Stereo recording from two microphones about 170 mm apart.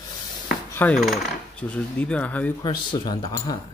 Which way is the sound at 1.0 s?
Centre (ahead or behind).